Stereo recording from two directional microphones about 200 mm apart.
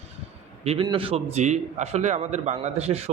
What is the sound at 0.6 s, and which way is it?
A man's voice, 30° right (ahead or behind).